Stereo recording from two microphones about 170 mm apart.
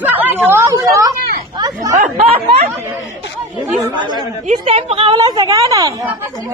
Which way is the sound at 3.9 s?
25° right (ahead or behind).